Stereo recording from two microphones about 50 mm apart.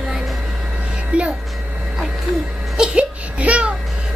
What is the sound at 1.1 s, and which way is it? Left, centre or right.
Music, right.